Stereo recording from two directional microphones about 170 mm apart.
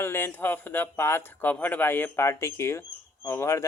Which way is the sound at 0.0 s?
15° left (ahead or behind).